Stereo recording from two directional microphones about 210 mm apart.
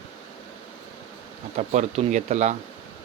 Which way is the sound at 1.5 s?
35° right (ahead or behind).